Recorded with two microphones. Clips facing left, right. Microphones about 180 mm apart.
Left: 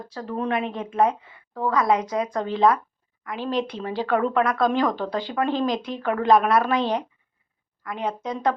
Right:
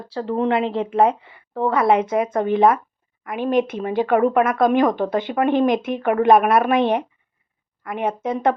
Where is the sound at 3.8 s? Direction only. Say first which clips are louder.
Right 5 dB; 20° right (ahead or behind).